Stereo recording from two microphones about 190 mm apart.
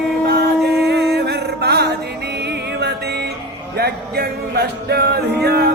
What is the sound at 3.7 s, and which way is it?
Music, 60° right (ahead or behind).